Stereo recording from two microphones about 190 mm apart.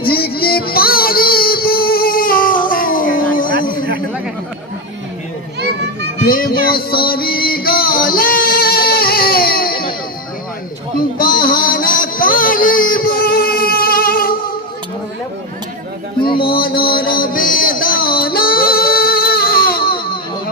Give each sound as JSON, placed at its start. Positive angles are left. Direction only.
{"t": 0.1, "sound": "music", "side_deg": 55}
{"t": 3.2, "sound": "a sound", "side_deg": 45}
{"t": 5.5, "sound": "children playing", "side_deg": -60}
{"t": 6.2, "sound": "music", "side_deg": 50}
{"t": 11.2, "sound": "music", "side_deg": 50}
{"t": 16.5, "sound": "a sound", "side_deg": 50}
{"t": 17.2, "sound": "music", "side_deg": 45}